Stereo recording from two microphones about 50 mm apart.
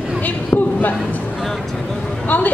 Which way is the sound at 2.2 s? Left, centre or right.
Left.